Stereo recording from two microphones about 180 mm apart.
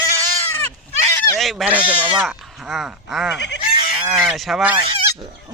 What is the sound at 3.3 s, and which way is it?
Fowl, 70° left (ahead or behind).